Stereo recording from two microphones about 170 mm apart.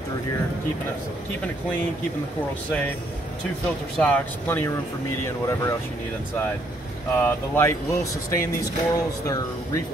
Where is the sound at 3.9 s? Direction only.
5° left (ahead or behind).